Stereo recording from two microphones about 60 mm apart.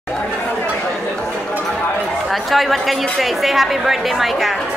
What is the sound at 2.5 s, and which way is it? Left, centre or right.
A woman's voice, centre.